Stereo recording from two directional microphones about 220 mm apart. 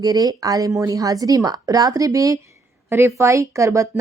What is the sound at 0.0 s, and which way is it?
A woman's voice, 15° right (ahead or behind).